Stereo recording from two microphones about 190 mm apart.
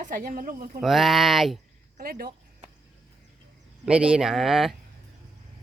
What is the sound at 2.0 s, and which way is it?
Speech, 50° right (ahead or behind).